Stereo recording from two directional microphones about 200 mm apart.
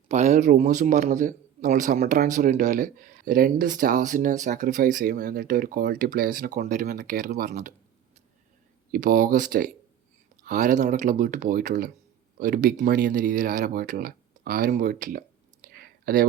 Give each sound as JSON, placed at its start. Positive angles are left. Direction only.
{"t": 0.1, "sound": "a man's voice", "side_deg": -35}
{"t": 8.9, "sound": "a man's voice", "side_deg": -45}
{"t": 15.6, "sound": "a sound", "side_deg": -45}